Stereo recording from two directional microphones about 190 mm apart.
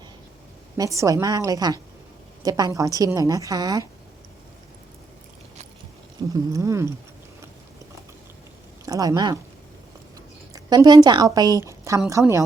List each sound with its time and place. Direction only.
0.9 s a woman's voice: 20° right (ahead or behind)
6.3 s cat: 15° right (ahead or behind)
8.8 s speech: 20° right (ahead or behind)
10.5 s a woman's voice: 20° right (ahead or behind)